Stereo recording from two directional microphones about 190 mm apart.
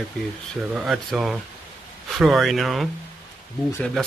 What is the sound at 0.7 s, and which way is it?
Speech, centre (ahead or behind).